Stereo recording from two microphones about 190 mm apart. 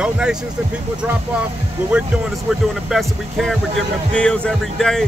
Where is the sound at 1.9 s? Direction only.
5° right (ahead or behind).